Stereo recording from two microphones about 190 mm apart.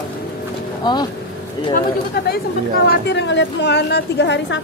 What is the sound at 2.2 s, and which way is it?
A woman's voice, 55° left (ahead or behind).